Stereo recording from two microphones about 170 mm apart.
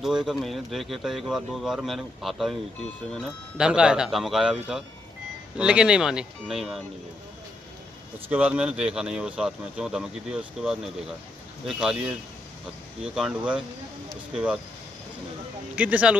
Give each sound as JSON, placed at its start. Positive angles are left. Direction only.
{"t": 0.0, "sound": "speech", "side_deg": -5}
{"t": 5.6, "sound": "speech", "side_deg": -5}
{"t": 8.3, "sound": "speech", "side_deg": -10}
{"t": 15.7, "sound": "speech", "side_deg": -10}